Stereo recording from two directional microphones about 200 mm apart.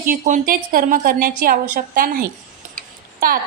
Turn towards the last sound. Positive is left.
turn(degrees=-45)  # may be behind; listen again after turning